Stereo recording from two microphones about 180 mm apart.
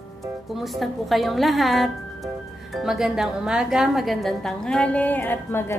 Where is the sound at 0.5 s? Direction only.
Centre (ahead or behind).